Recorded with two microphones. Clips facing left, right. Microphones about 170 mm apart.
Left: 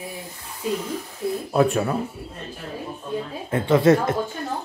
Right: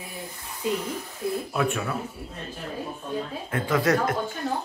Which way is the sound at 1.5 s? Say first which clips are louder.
Left 11 dB; 35° left (ahead or behind).